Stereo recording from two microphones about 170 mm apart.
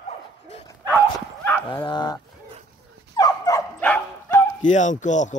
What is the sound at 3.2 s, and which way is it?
Dog, 20° left (ahead or behind).